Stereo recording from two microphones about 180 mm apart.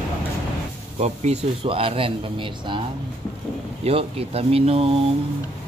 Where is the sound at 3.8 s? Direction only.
35° right (ahead or behind).